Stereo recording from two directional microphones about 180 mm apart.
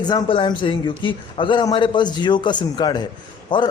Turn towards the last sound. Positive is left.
turn(degrees=25)  # may be behind; listen again after turning